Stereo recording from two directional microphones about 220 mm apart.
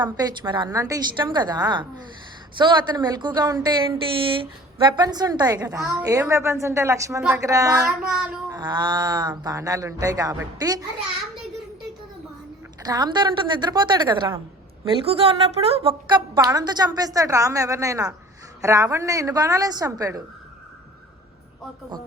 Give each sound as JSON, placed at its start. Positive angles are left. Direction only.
{"t": 0.0, "sound": "a woman's voice", "side_deg": -20}
{"t": 7.9, "sound": "child singing", "side_deg": -5}
{"t": 8.5, "sound": "a woman's voice", "side_deg": -20}
{"t": 12.8, "sound": "a woman's voice", "side_deg": -20}